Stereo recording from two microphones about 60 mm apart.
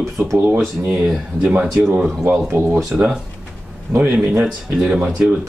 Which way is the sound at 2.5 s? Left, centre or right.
Right.